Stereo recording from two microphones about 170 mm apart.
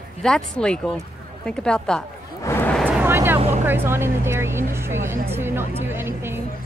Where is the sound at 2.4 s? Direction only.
10° left (ahead or behind).